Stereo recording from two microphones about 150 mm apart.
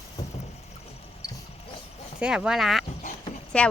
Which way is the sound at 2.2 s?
5° right (ahead or behind).